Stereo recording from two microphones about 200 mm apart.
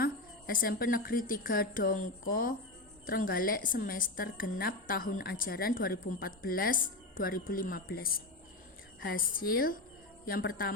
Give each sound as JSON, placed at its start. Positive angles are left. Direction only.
{"t": 0.0, "sound": "a woman's voice", "side_deg": 50}